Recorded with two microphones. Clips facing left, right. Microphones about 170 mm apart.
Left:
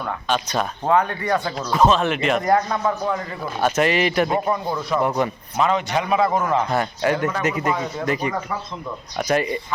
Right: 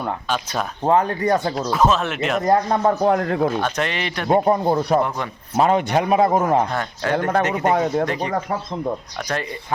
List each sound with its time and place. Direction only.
0.9 s a man's voice: 35° right (ahead or behind)
1.5 s speech: 5° right (ahead or behind)
2.4 s a man's voice: 35° right (ahead or behind)
3.0 s speech: 65° right (ahead or behind)
3.6 s speech: 5° left (ahead or behind)
4.3 s a man's voice: 40° right (ahead or behind)
5.0 s speech: 10° left (ahead or behind)
5.5 s a man's voice: 50° right (ahead or behind)
6.7 s speech: 10° left (ahead or behind)
7.2 s a man's voice: 55° right (ahead or behind)
8.0 s speech: 5° left (ahead or behind)
9.3 s speech: 10° left (ahead or behind)